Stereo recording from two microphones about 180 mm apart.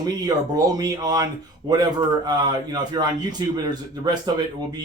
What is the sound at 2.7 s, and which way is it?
Speech, 20° right (ahead or behind).